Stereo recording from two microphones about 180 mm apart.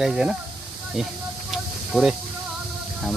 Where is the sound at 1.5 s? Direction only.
Centre (ahead or behind).